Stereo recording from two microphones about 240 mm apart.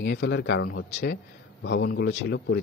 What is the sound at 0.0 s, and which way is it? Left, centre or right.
A man's voice, left.